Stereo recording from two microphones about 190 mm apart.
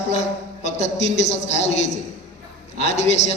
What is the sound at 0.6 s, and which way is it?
A man's voice, 35° left (ahead or behind).